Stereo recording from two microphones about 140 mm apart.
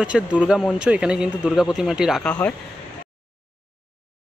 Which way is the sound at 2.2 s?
10° left (ahead or behind).